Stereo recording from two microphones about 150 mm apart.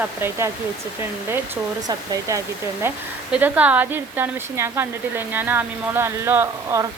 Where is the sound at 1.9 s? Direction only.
20° right (ahead or behind).